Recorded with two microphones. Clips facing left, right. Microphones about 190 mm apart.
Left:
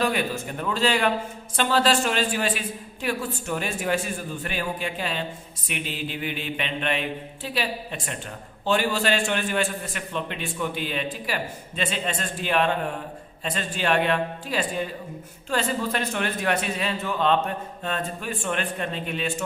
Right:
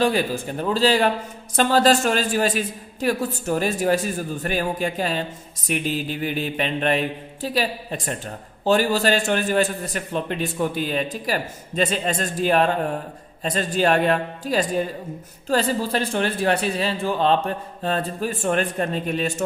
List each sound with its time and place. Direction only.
0.0 s a man's voice: 30° right (ahead or behind)